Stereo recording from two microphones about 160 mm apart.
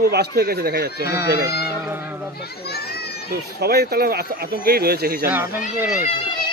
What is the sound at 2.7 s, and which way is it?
Children playing, 80° left.